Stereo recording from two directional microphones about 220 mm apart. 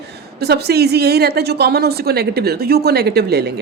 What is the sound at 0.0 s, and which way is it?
A woman's voice, 45° right (ahead or behind).